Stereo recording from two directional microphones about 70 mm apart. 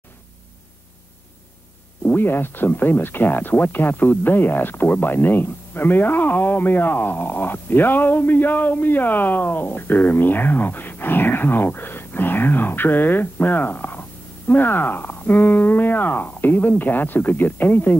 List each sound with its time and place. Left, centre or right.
2.0 s speech: left